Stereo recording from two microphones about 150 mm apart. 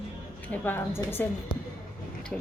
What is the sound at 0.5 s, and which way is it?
Speech, 15° left (ahead or behind).